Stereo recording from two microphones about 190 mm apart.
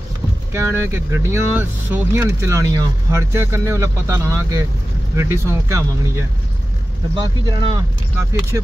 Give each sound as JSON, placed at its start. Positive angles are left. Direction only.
{"t": 0.5, "sound": "speech", "side_deg": -15}